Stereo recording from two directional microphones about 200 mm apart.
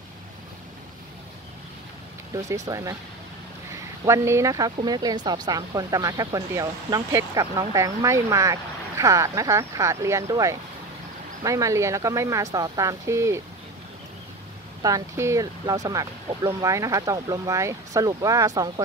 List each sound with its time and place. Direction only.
2.3 s speech: 15° right (ahead or behind)
4.0 s speech: 15° right (ahead or behind)
14.8 s speech: 20° right (ahead or behind)